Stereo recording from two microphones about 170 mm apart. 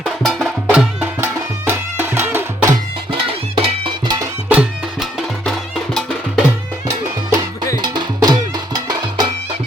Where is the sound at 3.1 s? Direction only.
30° right (ahead or behind).